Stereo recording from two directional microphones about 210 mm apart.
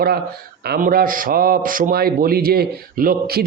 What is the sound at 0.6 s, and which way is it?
A man's voice, 45° right (ahead or behind).